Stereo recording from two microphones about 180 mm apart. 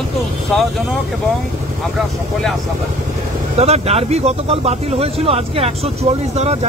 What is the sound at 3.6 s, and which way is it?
Speech, 35° right (ahead or behind).